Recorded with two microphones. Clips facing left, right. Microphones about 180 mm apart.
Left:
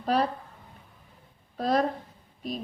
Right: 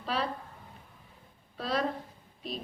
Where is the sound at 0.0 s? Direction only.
45° left (ahead or behind).